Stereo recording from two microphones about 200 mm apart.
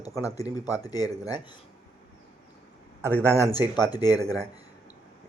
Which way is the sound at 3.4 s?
20° left (ahead or behind).